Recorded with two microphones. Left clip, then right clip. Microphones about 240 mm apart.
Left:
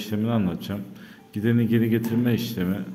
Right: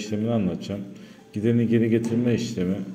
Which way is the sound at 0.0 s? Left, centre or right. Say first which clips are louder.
Right 1 dB; centre.